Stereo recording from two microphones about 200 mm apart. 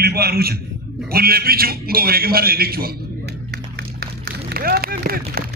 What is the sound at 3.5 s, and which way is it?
Clapping, 55° right (ahead or behind).